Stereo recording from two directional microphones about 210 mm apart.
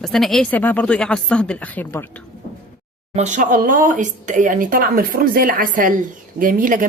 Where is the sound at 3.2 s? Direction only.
35° right (ahead or behind).